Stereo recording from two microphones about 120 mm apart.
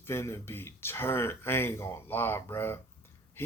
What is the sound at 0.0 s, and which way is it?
Speech, 20° left (ahead or behind).